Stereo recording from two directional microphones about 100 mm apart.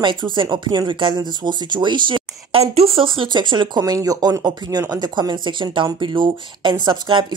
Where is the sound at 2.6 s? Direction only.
85° right; by 3.8 s 50° right (ahead or behind).